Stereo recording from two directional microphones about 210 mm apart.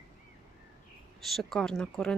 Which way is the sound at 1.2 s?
Centre (ahead or behind).